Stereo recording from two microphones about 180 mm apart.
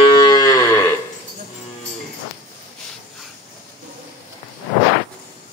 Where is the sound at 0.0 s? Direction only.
25° left (ahead or behind).